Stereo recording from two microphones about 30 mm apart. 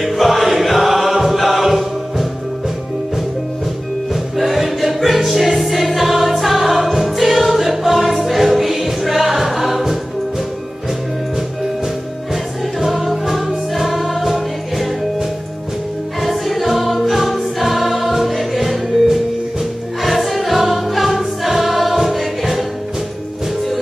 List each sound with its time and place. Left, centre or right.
0.0 s choir: centre
1.6 s music: centre
4.1 s music: centre
12.7 s music: centre
16.2 s music: centre
20.0 s choir: centre